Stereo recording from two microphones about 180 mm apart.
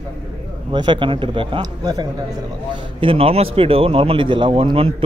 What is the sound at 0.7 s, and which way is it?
Speech, 25° right (ahead or behind).